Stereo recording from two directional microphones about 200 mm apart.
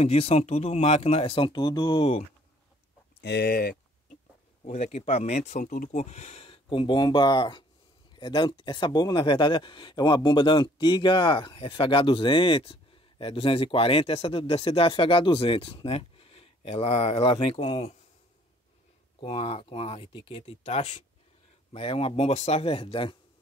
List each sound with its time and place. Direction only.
0.0 s speech: 30° left (ahead or behind)
3.2 s speech: 55° left (ahead or behind)
4.6 s speech: 35° left (ahead or behind)
19.1 s speech: 30° left (ahead or behind)